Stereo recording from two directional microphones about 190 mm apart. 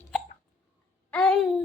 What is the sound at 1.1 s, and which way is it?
Babbling, 5° left (ahead or behind).